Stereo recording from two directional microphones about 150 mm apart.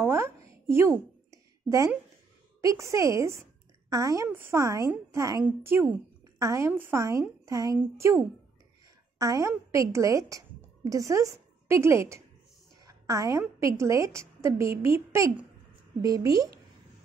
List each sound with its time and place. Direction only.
0.0 s a sound: 20° right (ahead or behind)
2.6 s a woman's voice: 20° right (ahead or behind)
9.2 s a woman's voice: 20° right (ahead or behind)